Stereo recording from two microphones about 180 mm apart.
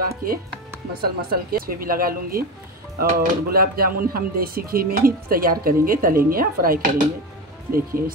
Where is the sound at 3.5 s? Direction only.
55° right (ahead or behind).